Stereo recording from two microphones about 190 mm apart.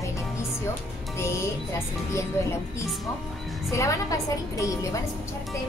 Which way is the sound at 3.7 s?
15° left (ahead or behind).